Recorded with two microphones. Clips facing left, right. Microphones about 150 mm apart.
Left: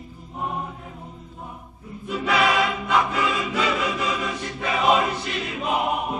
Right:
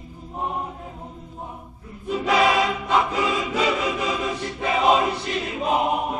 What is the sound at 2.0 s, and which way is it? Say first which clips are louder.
Choir: right 2 dB; 35° right (ahead or behind).